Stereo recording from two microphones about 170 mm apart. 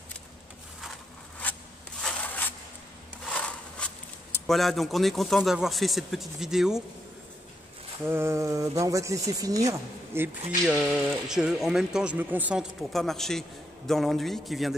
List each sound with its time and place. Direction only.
1.4 s rub: 10° left (ahead or behind)
2.0 s a sound: 5° left (ahead or behind)
3.3 s speech: 5° left (ahead or behind)
8.0 s speech: 15° right (ahead or behind)
10.6 s speech: 5° right (ahead or behind)